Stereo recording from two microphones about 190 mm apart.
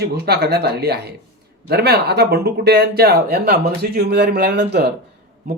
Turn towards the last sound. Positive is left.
turn(degrees=-60)  # may be behind; listen again after turning